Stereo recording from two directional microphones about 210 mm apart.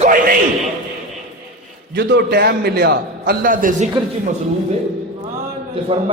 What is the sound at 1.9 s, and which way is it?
A man's voice, 50° right (ahead or behind).